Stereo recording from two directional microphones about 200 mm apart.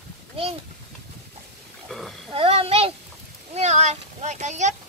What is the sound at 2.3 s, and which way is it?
A child's voice, 30° right (ahead or behind).